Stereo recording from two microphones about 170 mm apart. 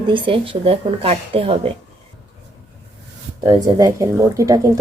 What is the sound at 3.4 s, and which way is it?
Speech, 25° right (ahead or behind).